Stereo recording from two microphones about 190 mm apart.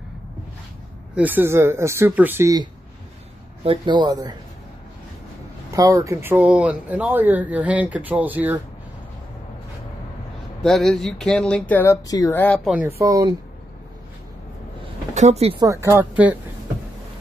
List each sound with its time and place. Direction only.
1.1 s speech: 10° right (ahead or behind)
5.7 s speech: 20° right (ahead or behind)
10.6 s speech: centre (ahead or behind)
12.6 s speech: 5° right (ahead or behind)
15.1 s speech: 35° right (ahead or behind)
15.6 s speech: 15° right (ahead or behind)